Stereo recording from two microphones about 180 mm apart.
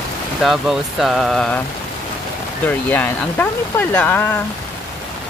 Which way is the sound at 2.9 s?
10° left (ahead or behind).